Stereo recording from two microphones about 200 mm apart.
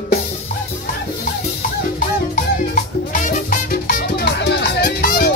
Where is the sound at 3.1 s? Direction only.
40° left (ahead or behind).